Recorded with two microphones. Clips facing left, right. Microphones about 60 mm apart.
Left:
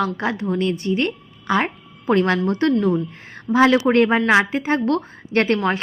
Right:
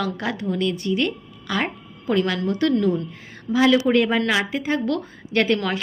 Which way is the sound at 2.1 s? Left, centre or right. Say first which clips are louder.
Left 4 dB; left.